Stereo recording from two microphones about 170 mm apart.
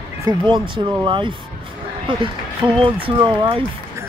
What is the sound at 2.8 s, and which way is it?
Speech, 30° right (ahead or behind).